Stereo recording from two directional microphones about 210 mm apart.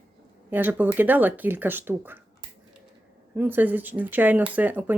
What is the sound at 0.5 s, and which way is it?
Speech, 10° right (ahead or behind).